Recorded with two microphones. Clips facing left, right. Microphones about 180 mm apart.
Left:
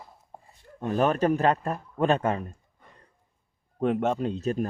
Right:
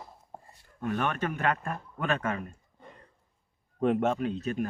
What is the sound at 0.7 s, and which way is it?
Speech, 30° left (ahead or behind).